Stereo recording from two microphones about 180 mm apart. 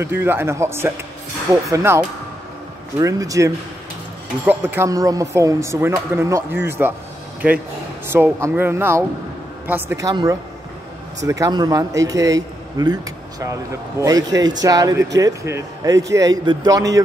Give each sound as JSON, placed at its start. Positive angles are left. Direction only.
{"t": 0.0, "sound": "speech", "side_deg": -10}
{"t": 8.1, "sound": "speech", "side_deg": -15}